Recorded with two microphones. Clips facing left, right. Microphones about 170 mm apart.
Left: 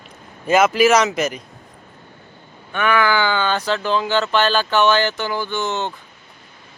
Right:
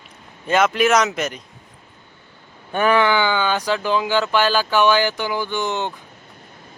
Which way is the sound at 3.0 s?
15° right (ahead or behind).